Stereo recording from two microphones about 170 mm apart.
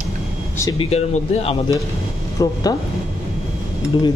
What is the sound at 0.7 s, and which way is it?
Speech, 35° left (ahead or behind).